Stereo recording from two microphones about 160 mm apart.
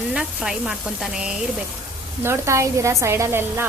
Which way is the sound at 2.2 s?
15° right (ahead or behind).